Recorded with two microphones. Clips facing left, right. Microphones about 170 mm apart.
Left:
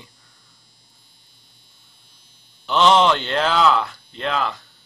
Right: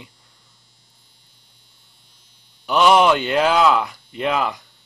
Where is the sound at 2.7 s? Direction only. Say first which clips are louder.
Right 1 dB; 10° right (ahead or behind).